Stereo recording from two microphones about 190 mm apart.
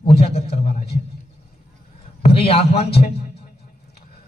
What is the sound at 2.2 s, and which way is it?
Speech, 30° left (ahead or behind).